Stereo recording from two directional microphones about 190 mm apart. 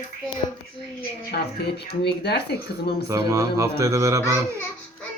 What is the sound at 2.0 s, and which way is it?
Speech, 60° left (ahead or behind).